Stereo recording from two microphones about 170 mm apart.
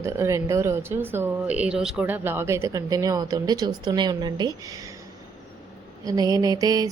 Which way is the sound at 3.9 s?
25° right (ahead or behind).